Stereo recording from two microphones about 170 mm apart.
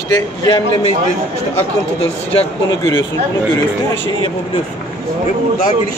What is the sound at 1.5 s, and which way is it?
Speech, 35° left (ahead or behind).